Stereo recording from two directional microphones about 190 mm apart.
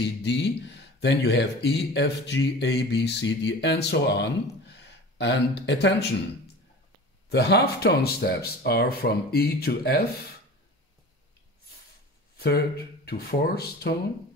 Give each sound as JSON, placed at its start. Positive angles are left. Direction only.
{"t": 0.0, "sound": "speech", "side_deg": 65}
{"t": 7.2, "sound": "speech", "side_deg": 60}
{"t": 12.4, "sound": "speech", "side_deg": 55}